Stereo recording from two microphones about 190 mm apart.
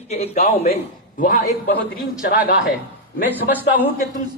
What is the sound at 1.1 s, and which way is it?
Speech, 45° left (ahead or behind).